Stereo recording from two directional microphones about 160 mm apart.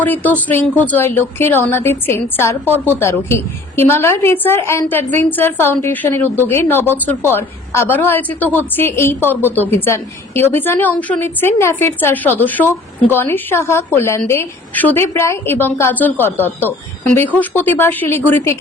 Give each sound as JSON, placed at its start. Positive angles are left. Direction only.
{"t": 0.0, "sound": "a woman's voice", "side_deg": 10}